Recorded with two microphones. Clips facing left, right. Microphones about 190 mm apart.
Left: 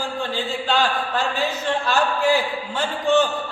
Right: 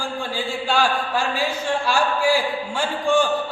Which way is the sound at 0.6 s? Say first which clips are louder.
Right 1 dB; 10° right (ahead or behind).